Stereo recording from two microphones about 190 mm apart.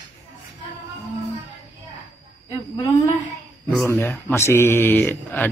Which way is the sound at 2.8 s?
20° left (ahead or behind).